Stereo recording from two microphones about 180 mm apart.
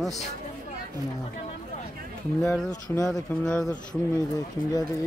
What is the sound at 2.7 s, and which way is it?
Speech, 15° left (ahead or behind).